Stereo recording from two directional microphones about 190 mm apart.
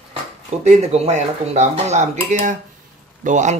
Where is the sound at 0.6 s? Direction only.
35° right (ahead or behind).